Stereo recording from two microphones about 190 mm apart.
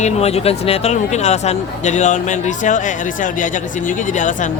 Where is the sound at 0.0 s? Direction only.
35° left (ahead or behind).